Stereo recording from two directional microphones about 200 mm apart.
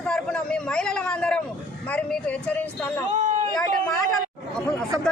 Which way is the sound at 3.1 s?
40° right (ahead or behind).